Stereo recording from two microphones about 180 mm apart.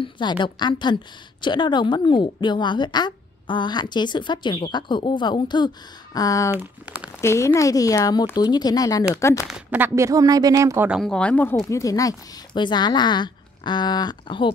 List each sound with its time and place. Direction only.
0.0 s a woman's voice: 25° left (ahead or behind)
6.5 s speech: 10° right (ahead or behind)
7.2 s a woman's voice: 15° left (ahead or behind)
9.5 s speech: 10° right (ahead or behind)
10.9 s a woman's voice: centre (ahead or behind); by 14.5 s 25° left (ahead or behind)